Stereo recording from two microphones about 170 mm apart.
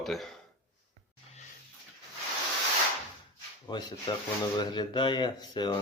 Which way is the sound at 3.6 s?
25° left (ahead or behind).